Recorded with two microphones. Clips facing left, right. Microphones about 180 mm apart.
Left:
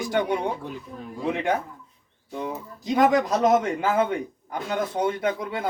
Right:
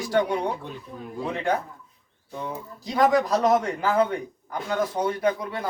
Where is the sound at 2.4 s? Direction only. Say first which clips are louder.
Left 2 dB; 20° left (ahead or behind).